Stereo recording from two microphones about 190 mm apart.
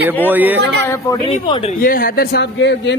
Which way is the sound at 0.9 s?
20° left (ahead or behind).